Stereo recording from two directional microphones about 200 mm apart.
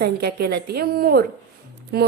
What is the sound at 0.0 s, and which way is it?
Speech, 50° right (ahead or behind).